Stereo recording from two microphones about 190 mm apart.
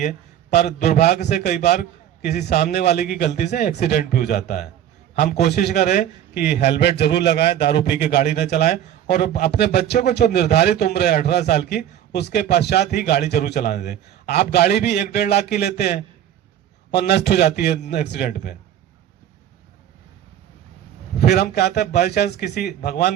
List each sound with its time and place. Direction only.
0.9 s a man's voice: 55° left (ahead or behind)
1.2 s a man's voice: 40° left (ahead or behind)
1.6 s a man's voice: 55° left (ahead or behind)
5.8 s a man's voice: 45° left (ahead or behind)
6.4 s a man's voice: 60° left (ahead or behind); by 18.5 s 45° left (ahead or behind)
21.2 s a man's voice: 55° left (ahead or behind)